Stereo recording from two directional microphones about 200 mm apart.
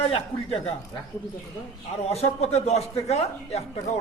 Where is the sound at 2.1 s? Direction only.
30° left (ahead or behind).